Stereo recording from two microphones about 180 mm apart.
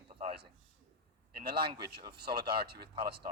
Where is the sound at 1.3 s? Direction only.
60° right (ahead or behind).